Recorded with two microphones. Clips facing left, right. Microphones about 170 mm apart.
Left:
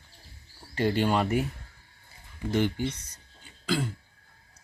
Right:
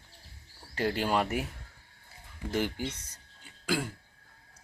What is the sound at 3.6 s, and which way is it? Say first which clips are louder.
Throat clearing: left 2 dB; 10° right (ahead or behind).